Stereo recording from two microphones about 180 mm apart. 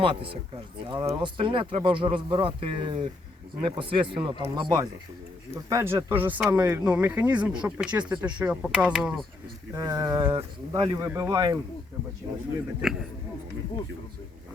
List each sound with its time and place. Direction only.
0.0 s speech: 30° right (ahead or behind); by 9.2 s centre (ahead or behind)
9.7 s speech: 20° right (ahead or behind)
12.8 s speech: centre (ahead or behind)